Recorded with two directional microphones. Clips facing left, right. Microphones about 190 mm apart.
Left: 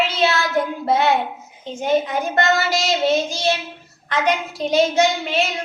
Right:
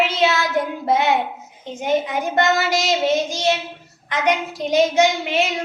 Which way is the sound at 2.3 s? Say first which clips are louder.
Right 1 dB; 15° right (ahead or behind).